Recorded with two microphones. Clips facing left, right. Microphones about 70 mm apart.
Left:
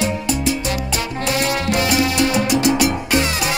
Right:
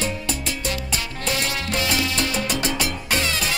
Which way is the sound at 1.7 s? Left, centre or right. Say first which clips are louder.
Left 5 dB; centre.